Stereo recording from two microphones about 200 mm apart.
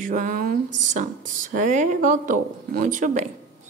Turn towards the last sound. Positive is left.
turn(degrees=-40)  # may be behind; listen again after turning